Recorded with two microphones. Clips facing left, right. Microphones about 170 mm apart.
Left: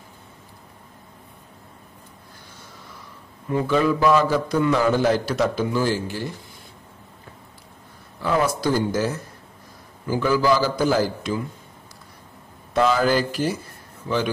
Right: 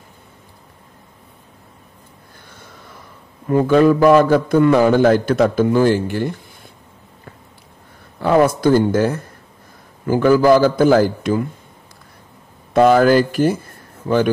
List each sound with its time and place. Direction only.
2.5 s a man's voice: 55° right (ahead or behind)
8.2 s a man's voice: 55° right (ahead or behind)
12.7 s speech: 55° right (ahead or behind)